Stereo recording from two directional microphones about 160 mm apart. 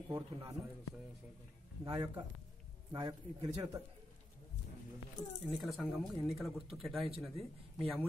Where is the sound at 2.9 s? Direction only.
25° right (ahead or behind).